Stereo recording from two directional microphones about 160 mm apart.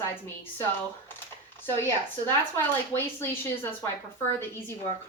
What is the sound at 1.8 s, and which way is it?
A woman's voice, 15° left (ahead or behind).